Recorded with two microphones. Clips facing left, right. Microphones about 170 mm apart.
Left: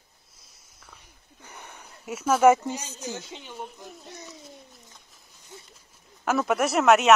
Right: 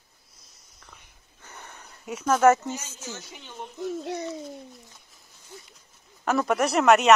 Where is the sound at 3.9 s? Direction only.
80° right.